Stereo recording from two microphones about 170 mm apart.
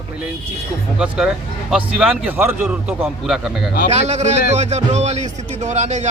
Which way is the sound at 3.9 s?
40° right (ahead or behind).